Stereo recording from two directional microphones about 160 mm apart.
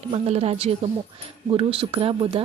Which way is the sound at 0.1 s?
40° right (ahead or behind).